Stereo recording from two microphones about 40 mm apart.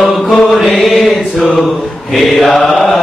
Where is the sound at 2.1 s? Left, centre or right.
Centre.